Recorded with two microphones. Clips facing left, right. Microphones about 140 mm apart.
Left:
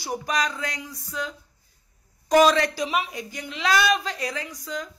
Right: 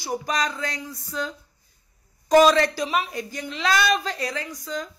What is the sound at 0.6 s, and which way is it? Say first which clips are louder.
Speech: right 2 dB; 15° left (ahead or behind).